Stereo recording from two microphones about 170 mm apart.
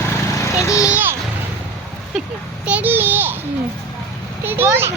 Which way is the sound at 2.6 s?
10° right (ahead or behind).